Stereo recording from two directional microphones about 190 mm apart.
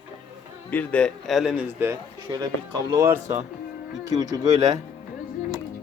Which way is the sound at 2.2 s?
20° right (ahead or behind).